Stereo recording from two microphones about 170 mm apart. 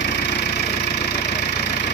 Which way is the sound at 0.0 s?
90° left.